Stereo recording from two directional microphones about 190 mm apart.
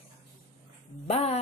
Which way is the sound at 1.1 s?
30° left (ahead or behind).